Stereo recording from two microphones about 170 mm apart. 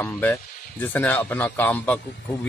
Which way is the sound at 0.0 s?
10° left (ahead or behind).